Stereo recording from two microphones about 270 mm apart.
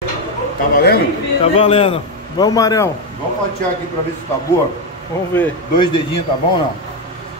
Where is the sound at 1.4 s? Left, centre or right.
Left.